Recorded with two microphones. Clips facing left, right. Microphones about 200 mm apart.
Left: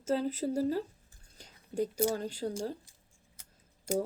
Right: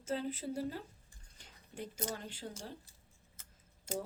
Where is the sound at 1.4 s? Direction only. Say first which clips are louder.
Left 13 dB; 40° left (ahead or behind).